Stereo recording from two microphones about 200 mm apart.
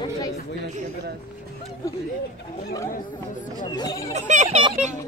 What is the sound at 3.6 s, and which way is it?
Speech, 20° left (ahead or behind).